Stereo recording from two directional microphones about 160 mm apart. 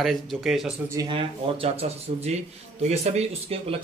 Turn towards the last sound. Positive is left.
turn(degrees=-40)  # may be behind; listen again after turning